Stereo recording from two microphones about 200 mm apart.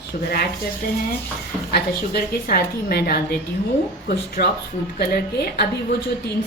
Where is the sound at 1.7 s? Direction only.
50° left (ahead or behind).